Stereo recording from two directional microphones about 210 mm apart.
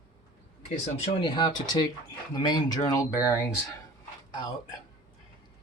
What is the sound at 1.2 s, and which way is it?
Speech, 20° left (ahead or behind).